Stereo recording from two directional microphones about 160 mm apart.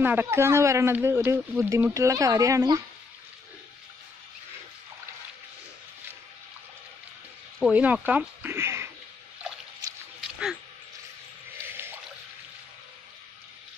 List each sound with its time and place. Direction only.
0.0 s speech: 15° right (ahead or behind)
7.5 s speech: 5° right (ahead or behind)
11.6 s a sound: 15° right (ahead or behind)